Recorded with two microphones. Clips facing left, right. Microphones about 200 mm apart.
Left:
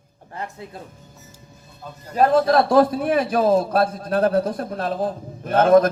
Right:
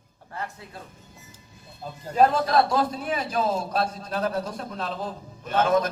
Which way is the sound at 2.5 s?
50° left (ahead or behind).